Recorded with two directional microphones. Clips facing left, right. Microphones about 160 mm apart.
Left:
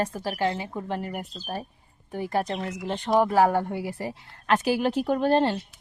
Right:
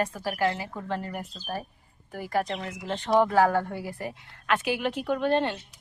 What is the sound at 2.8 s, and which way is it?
Speech, 15° left (ahead or behind).